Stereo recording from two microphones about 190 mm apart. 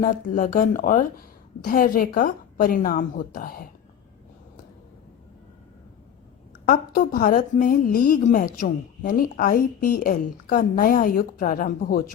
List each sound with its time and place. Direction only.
0.0 s a woman's voice: 45° left (ahead or behind)
6.7 s a woman's voice: 50° left (ahead or behind)